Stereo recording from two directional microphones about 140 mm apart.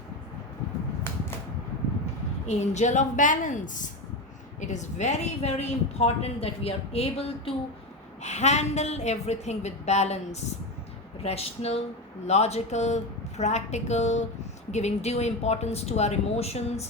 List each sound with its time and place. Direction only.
2.5 s a woman's voice: 55° left (ahead or behind)
11.2 s a woman's voice: 45° left (ahead or behind)